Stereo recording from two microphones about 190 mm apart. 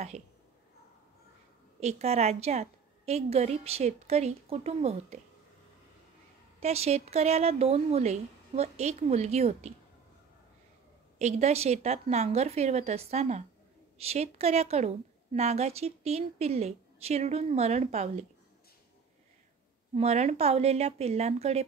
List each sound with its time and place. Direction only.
0.1 s a woman's voice: 35° right (ahead or behind)
1.8 s a woman's voice: 35° right (ahead or behind)
6.6 s a woman's voice: 35° right (ahead or behind)
11.1 s a woman's voice: 35° right (ahead or behind)
19.9 s a woman's voice: 35° right (ahead or behind)